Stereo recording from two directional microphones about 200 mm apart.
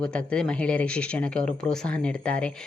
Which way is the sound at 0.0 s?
5° left (ahead or behind).